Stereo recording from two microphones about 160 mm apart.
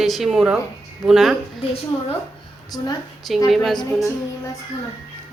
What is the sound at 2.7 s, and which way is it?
Speech, 25° left (ahead or behind).